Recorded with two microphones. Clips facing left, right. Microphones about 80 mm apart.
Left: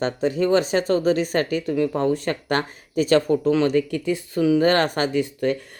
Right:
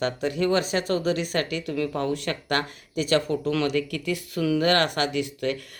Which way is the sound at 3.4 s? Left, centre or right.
Left.